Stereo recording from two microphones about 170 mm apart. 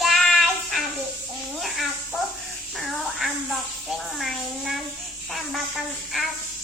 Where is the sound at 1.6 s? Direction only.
Centre (ahead or behind).